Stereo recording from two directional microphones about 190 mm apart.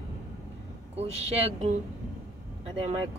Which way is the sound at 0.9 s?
35° right (ahead or behind).